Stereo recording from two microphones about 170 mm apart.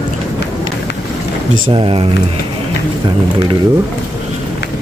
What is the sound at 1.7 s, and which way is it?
Speech, 30° right (ahead or behind).